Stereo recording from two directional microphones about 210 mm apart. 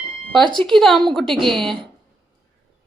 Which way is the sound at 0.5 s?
Centre (ahead or behind).